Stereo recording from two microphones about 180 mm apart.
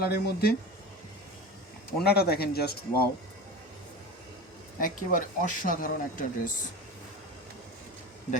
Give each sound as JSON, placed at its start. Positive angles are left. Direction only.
{"t": 0.0, "sound": "speech", "side_deg": 55}
{"t": 2.0, "sound": "speech", "side_deg": 60}
{"t": 4.8, "sound": "speech", "side_deg": 50}